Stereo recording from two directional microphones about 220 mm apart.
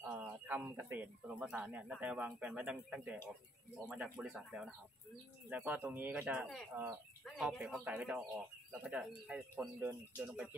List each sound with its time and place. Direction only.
0.0 s speech: 5° right (ahead or behind)